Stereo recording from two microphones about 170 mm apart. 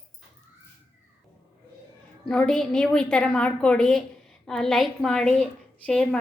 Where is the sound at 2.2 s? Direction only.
5° left (ahead or behind).